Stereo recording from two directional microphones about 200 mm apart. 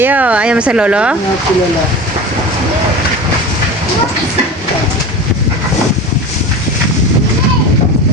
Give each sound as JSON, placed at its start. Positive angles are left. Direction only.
{"t": 0.0, "sound": "speech", "side_deg": -10}